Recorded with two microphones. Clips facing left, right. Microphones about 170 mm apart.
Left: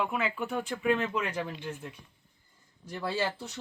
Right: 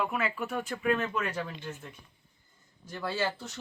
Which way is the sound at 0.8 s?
15° left (ahead or behind).